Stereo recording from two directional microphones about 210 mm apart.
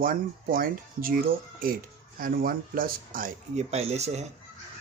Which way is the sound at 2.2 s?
45° right (ahead or behind).